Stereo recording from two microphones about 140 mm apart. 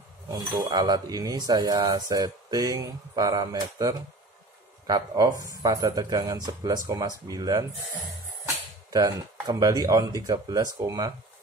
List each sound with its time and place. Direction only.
0.6 s speech: 30° right (ahead or behind)
8.9 s speech: 25° right (ahead or behind)